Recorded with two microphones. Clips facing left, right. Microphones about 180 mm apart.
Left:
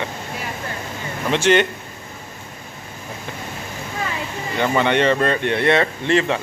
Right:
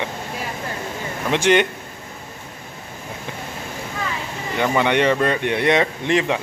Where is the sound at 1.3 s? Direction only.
15° right (ahead or behind).